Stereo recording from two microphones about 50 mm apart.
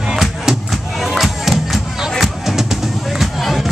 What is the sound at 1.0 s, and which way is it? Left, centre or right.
Music, centre.